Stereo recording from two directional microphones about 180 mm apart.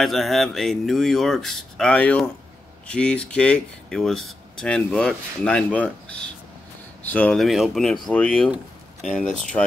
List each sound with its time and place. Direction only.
0.0 s speech: centre (ahead or behind)